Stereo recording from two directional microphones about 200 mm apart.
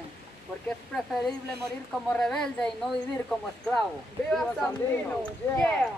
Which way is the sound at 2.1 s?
5° left (ahead or behind).